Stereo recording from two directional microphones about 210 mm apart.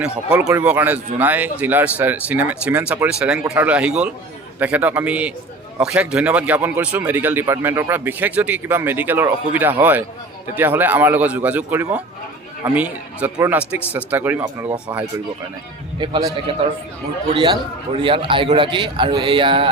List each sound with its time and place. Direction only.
0.0 s speech: 5° right (ahead or behind)
17.9 s speech: 25° right (ahead or behind)